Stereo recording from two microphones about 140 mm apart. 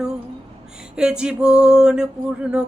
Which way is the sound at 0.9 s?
5° right (ahead or behind).